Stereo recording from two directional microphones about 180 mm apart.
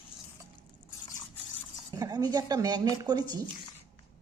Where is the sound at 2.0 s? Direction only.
20° right (ahead or behind).